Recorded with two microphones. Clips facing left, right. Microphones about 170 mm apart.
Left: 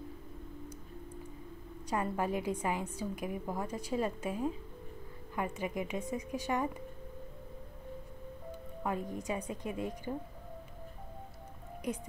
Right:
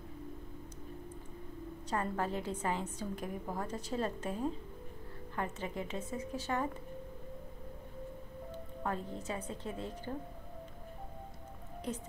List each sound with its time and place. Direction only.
1.9 s a woman's voice: 10° left (ahead or behind)
8.8 s a woman's voice: 15° left (ahead or behind)